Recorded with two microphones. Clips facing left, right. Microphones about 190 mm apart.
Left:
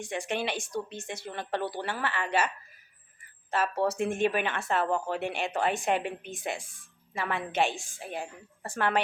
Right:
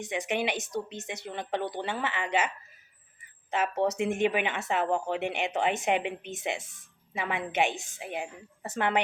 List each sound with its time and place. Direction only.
0.0 s speech: 20° right (ahead or behind)
3.5 s speech: 20° right (ahead or behind)